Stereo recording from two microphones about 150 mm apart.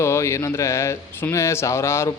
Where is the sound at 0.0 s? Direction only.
20° left (ahead or behind).